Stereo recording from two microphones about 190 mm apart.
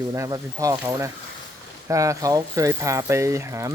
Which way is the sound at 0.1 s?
20° right (ahead or behind).